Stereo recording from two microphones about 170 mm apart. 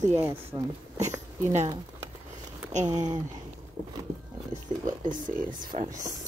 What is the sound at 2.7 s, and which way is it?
Speech, 45° right (ahead or behind).